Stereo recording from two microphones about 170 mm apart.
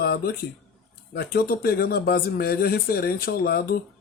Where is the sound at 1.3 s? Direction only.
65° left (ahead or behind).